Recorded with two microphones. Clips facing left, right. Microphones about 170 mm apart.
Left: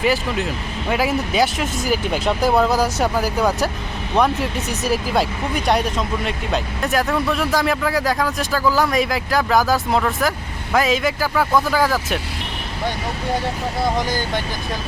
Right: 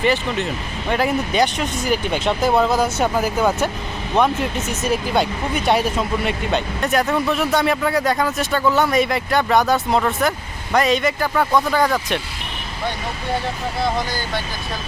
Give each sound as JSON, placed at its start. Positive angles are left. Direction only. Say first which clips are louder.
{"t": 0.0, "sound": "speech", "louder": "even", "side_deg": 0}